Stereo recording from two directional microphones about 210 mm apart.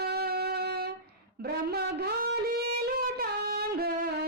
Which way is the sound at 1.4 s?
50° right (ahead or behind).